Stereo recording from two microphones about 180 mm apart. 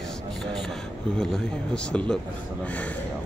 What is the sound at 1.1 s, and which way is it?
Speech, centre (ahead or behind).